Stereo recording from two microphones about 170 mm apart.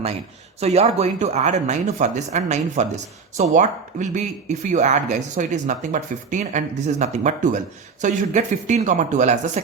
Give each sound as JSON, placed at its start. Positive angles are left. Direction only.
{"t": 0.6, "sound": "speech", "side_deg": -40}